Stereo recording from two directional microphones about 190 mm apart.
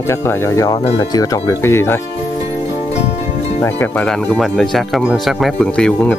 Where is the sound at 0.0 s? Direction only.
15° left (ahead or behind).